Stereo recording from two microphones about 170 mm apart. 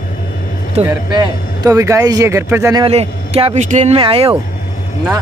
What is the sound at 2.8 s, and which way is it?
A man's voice, 35° right (ahead or behind).